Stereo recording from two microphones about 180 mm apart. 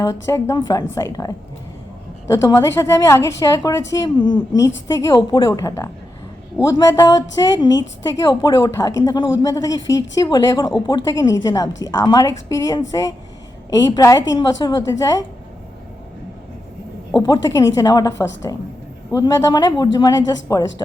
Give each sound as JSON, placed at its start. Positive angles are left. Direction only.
{"t": 0.0, "sound": "a woman's voice", "side_deg": 20}
{"t": 17.2, "sound": "speech", "side_deg": 20}
{"t": 19.1, "sound": "speech", "side_deg": 20}